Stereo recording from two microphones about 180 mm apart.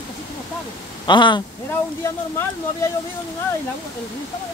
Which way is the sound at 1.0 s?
25° left (ahead or behind).